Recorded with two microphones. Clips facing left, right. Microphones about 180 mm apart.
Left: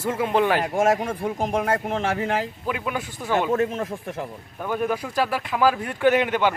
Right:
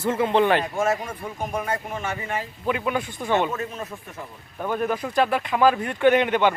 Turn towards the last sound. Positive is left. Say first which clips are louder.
# right 1 dB
turn(degrees=5)  # may be behind; listen again after turning